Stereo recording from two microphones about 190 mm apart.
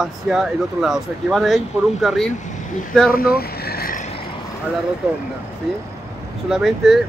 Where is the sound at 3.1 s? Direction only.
50° left (ahead or behind).